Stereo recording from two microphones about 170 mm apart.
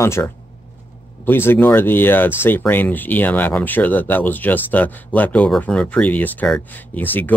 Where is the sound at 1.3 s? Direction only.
15° left (ahead or behind).